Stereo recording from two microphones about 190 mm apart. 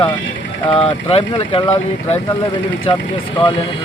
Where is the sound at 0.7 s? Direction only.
30° left (ahead or behind).